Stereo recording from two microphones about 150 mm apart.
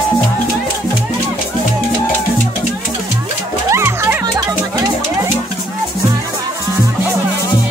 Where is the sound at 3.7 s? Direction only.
15° right (ahead or behind).